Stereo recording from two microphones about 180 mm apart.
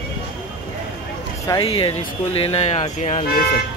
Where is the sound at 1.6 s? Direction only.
30° left (ahead or behind).